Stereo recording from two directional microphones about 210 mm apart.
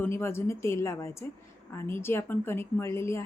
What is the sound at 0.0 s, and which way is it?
A woman's voice, 10° left (ahead or behind).